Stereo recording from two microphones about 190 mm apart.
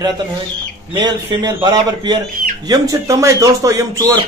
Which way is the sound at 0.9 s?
20° right (ahead or behind).